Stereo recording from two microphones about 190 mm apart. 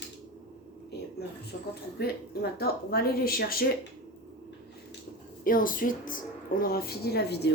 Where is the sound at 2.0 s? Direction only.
55° left (ahead or behind).